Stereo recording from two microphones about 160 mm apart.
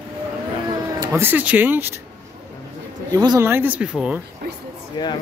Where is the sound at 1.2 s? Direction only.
10° right (ahead or behind).